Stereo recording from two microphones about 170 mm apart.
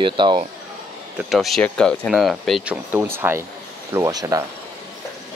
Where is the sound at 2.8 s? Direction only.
15° right (ahead or behind).